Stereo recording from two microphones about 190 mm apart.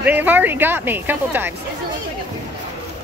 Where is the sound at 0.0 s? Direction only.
10° right (ahead or behind).